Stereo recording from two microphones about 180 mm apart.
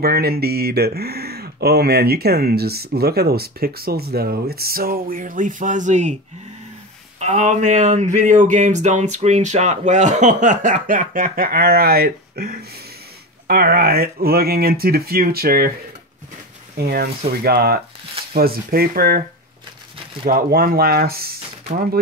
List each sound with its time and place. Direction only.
0.0 s speech: 60° right (ahead or behind); by 6.1 s 40° right (ahead or behind)
7.2 s speech: 40° right (ahead or behind); by 15.7 s 55° right (ahead or behind)
16.7 s speech: 60° right (ahead or behind)
20.2 s speech: 55° right (ahead or behind)